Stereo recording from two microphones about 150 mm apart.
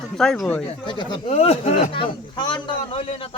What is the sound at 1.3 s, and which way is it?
Speech, 45° left (ahead or behind).